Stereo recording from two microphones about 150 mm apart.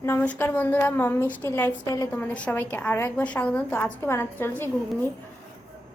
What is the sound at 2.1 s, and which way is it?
A woman's voice, 10° left (ahead or behind).